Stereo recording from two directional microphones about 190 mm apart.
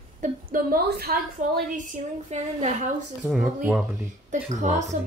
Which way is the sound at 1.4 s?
40° right (ahead or behind).